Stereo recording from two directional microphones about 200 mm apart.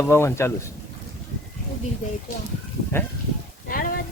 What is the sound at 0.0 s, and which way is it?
Speech, 15° left (ahead or behind).